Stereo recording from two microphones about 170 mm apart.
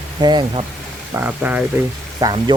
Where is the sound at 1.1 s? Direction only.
10° right (ahead or behind).